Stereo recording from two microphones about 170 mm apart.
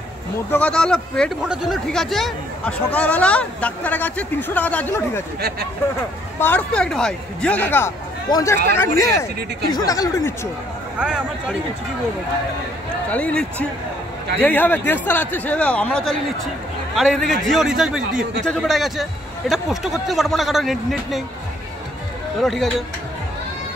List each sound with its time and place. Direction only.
0.5 s speech: 5° left (ahead or behind)
6.4 s speech: 10° left (ahead or behind)
11.0 s speech: 5° right (ahead or behind)
13.1 s speech: 5° left (ahead or behind)
22.4 s speech: centre (ahead or behind)